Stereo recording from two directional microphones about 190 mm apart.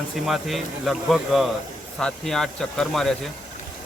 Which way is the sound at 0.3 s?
Centre (ahead or behind).